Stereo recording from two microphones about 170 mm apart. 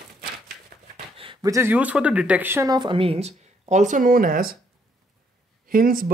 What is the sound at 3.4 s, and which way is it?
Speech, 45° right (ahead or behind).